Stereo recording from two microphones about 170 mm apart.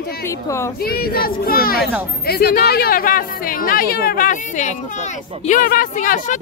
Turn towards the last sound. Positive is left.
turn(degrees=50)  # may be behind; listen again after turning